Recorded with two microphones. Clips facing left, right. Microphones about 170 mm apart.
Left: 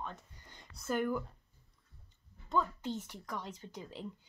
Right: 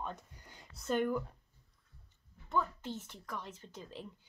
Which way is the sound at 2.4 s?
15° left (ahead or behind).